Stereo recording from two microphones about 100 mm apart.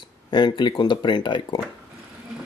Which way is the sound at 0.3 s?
50° left (ahead or behind).